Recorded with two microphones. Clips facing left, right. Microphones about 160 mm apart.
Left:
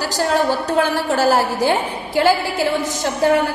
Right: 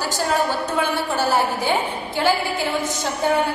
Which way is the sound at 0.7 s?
90° left.